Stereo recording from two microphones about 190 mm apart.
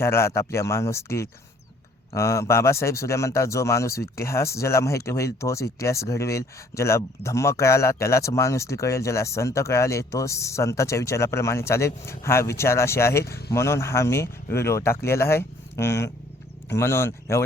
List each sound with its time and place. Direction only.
0.0 s speech: 15° left (ahead or behind)